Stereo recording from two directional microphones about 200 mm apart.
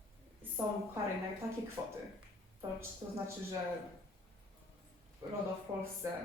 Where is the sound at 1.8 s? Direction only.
10° right (ahead or behind).